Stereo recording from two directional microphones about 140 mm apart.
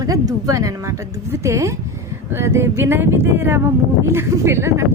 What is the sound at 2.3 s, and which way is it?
Speech, 20° right (ahead or behind).